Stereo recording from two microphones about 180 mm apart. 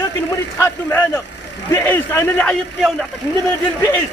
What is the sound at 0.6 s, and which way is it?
Speech, 10° left (ahead or behind).